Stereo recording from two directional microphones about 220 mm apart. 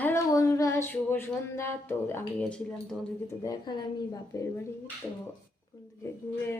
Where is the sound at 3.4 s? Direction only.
20° left (ahead or behind).